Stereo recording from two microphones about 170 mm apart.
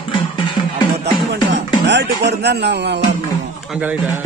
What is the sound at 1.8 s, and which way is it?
Music, 90° right.